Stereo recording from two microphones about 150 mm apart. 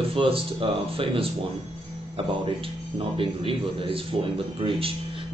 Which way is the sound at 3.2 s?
35° right (ahead or behind).